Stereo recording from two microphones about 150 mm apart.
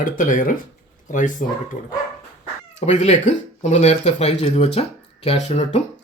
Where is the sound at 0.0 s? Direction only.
60° left (ahead or behind).